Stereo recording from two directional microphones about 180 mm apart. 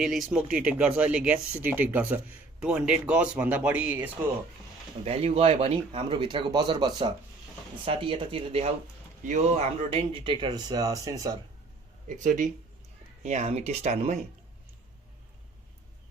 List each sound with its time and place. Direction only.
0.0 s speech: centre (ahead or behind)
5.0 s speech: 35° right (ahead or behind); by 11.3 s 20° right (ahead or behind)
12.0 s speech: 45° right (ahead or behind)